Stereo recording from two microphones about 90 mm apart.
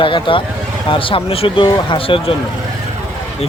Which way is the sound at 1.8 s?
85° left.